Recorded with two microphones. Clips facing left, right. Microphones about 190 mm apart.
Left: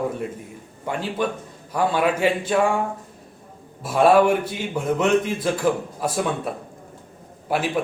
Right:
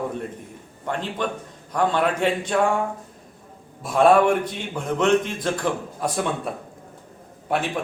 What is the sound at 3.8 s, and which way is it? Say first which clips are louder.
A man's voice: left 1 dB; 5° left (ahead or behind).